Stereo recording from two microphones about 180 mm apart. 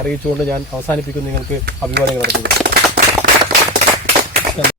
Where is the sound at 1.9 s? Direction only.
65° right (ahead or behind).